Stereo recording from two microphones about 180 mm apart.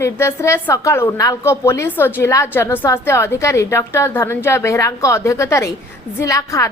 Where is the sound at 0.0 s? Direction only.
15° left (ahead or behind).